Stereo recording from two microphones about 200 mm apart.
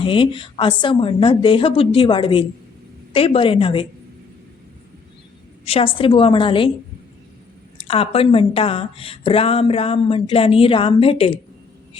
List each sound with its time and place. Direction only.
0.0 s a woman's voice: 25° left (ahead or behind)
5.6 s a woman's voice: 30° left (ahead or behind)
7.8 s a woman's voice: 30° left (ahead or behind)